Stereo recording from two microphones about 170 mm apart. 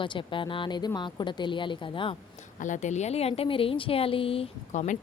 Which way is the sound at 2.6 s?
45° left (ahead or behind).